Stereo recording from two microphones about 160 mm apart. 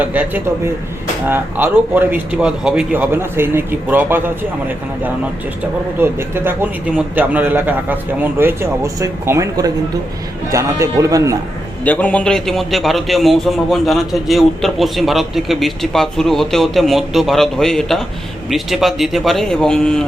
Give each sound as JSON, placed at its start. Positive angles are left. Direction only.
{"t": 0.0, "sound": "a man's voice", "side_deg": -10}
{"t": 6.0, "sound": "a man's voice", "side_deg": -15}
{"t": 11.9, "sound": "a man's voice", "side_deg": 10}